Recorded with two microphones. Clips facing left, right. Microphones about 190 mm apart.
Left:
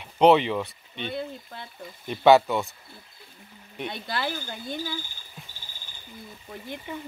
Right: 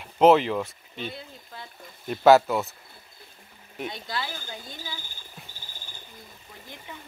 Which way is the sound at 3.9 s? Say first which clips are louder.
Left 3 dB; 60° left (ahead or behind).